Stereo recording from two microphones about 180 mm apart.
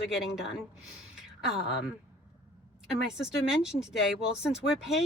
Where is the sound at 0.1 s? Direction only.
Centre (ahead or behind).